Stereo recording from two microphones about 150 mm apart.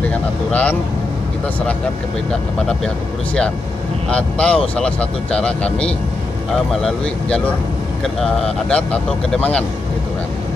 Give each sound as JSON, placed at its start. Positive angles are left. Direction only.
{"t": 0.0, "sound": "speech", "side_deg": 10}
{"t": 4.1, "sound": "speech", "side_deg": 5}